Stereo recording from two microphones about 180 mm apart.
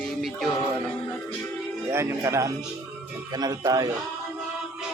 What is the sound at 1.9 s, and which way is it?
Speech, 15° right (ahead or behind).